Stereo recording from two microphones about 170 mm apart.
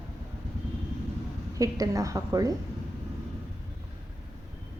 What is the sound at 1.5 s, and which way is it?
A woman's voice, 20° right (ahead or behind).